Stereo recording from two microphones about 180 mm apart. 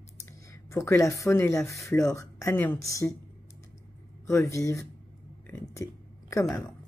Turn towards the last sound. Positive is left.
turn(degrees=15)  # may be behind; listen again after turning